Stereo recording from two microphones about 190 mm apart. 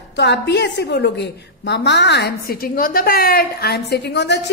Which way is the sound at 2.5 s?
50° left (ahead or behind).